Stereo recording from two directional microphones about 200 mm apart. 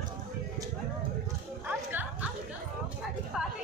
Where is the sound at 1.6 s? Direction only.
10° right (ahead or behind).